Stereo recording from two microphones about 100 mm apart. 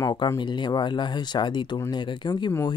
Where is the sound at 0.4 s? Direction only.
50° left (ahead or behind).